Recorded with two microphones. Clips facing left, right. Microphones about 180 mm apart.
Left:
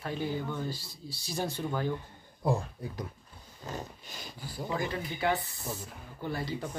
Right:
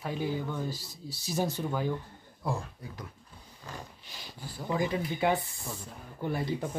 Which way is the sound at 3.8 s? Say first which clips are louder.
Left 4 dB; 45° left (ahead or behind).